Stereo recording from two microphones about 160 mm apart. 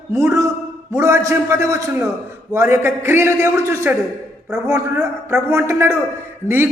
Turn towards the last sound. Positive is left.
turn(degrees=-15)  # may be behind; listen again after turning